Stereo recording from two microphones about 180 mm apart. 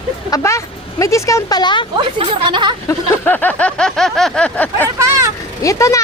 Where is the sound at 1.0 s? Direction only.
15° left (ahead or behind).